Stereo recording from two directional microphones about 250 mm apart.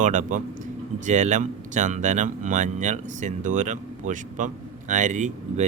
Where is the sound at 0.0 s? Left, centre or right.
Right.